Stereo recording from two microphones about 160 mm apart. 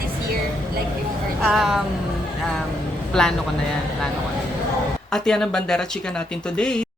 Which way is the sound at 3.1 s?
5° left (ahead or behind).